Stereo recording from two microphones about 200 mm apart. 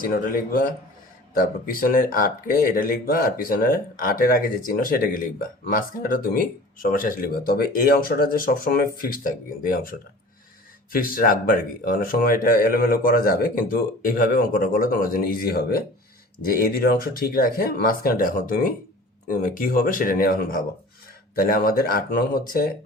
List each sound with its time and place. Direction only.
0.0 s speech: 45° left (ahead or behind)